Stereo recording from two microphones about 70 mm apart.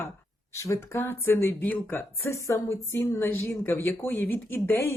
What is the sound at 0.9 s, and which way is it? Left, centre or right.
Speech, left.